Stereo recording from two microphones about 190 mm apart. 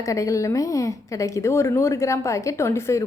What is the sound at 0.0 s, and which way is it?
A woman's voice, 15° left (ahead or behind).